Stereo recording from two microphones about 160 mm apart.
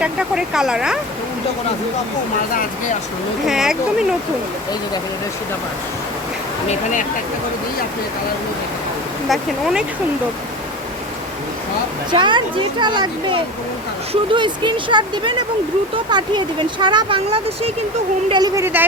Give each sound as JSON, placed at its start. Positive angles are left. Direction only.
{"t": 0.0, "sound": "speech", "side_deg": -5}
{"t": 3.4, "sound": "speech", "side_deg": -5}
{"t": 9.3, "sound": "speech", "side_deg": 0}
{"t": 12.1, "sound": "speech", "side_deg": -30}
{"t": 18.6, "sound": "speech", "side_deg": -10}